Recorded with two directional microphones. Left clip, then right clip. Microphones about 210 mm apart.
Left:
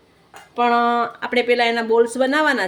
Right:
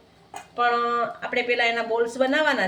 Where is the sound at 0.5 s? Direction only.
55° left (ahead or behind).